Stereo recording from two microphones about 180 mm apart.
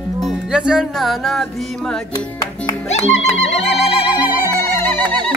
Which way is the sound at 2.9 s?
35° left (ahead or behind).